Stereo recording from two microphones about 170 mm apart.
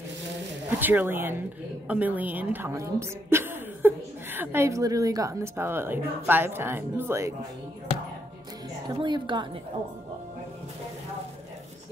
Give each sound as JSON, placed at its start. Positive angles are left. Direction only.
{"t": 0.7, "sound": "a woman's voice", "side_deg": -10}
{"t": 8.8, "sound": "a woman's voice", "side_deg": -25}